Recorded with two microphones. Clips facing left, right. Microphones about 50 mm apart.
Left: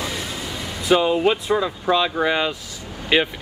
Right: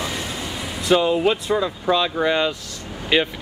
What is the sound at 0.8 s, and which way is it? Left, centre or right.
Speech, centre.